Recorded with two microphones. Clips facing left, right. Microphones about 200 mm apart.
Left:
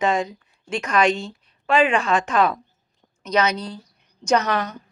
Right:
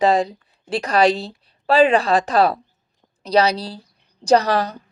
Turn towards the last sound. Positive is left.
turn(degrees=-35)  # may be behind; listen again after turning